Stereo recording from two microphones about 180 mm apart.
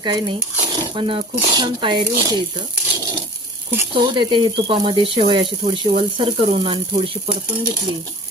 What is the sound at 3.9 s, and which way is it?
Speech, 25° right (ahead or behind).